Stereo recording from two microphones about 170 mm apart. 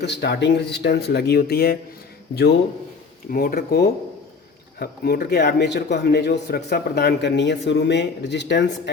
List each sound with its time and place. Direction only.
0.0 s speech: 80° left
3.3 s speech: 60° left (ahead or behind); by 8.6 s 90° left